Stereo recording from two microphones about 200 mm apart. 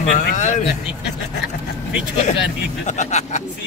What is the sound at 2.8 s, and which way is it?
Speech, 35° left (ahead or behind).